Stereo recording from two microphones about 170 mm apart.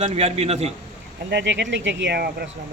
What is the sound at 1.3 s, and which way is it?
Speech, 90° right.